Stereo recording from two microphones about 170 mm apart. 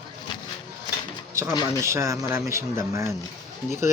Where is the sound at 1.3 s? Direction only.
15° right (ahead or behind).